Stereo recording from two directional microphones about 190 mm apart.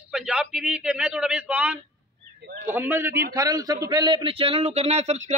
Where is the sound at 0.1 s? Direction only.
5° right (ahead or behind).